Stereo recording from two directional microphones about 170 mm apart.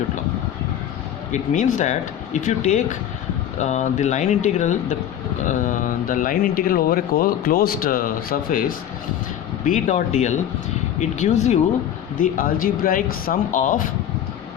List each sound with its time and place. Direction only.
1.3 s speech: 50° left (ahead or behind)
12.1 s speech: 55° left (ahead or behind)